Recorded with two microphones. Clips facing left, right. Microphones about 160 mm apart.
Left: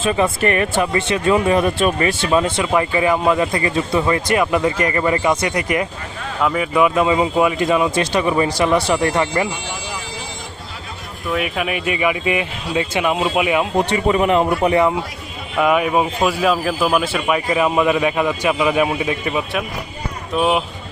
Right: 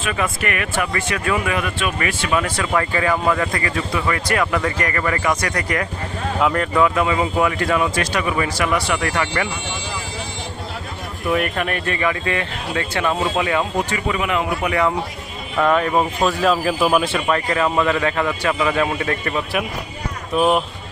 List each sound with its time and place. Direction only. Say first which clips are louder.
0.0 s speech: left 6 dB; 30° left (ahead or behind)
6.4 s speech: even; 5° left (ahead or behind)
6.7 s speech: left 4 dB; 20° left (ahead or behind)
11.3 s speech: right 1 dB; centre (ahead or behind)
13.9 s a man's voice: left 9 dB; 35° left (ahead or behind)
15.5 s speech: left 1 dB; 10° left (ahead or behind)